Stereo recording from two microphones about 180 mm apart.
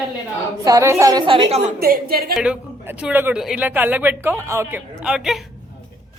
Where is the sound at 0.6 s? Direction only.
20° right (ahead or behind).